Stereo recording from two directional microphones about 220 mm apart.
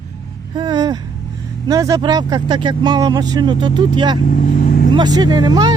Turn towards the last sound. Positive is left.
turn(degrees=-20)  # may be behind; listen again after turning